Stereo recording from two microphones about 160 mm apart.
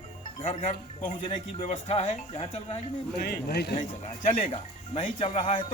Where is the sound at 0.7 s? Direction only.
40° left (ahead or behind).